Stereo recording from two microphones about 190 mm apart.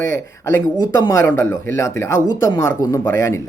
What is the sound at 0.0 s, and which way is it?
Speech, 15° left (ahead or behind).